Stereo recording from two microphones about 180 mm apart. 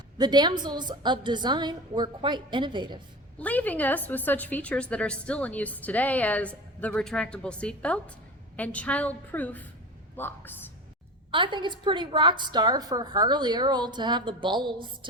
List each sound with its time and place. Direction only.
0.2 s a woman's voice: 25° right (ahead or behind)
3.3 s a woman's voice: 10° left (ahead or behind)
11.3 s a woman's voice: 25° right (ahead or behind)